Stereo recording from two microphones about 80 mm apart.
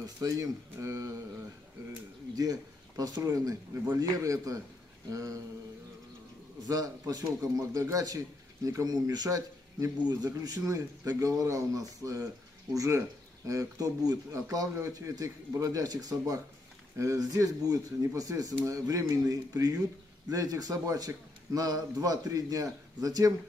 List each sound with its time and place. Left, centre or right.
0.0 s a man's voice: right
2.3 s a man's voice: right
6.6 s a man's voice: right